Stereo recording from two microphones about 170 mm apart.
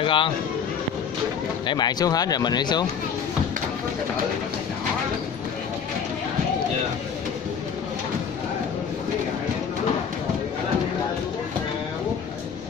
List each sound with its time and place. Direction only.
0.0 s speech: 30° left (ahead or behind)
1.7 s speech: 25° left (ahead or behind)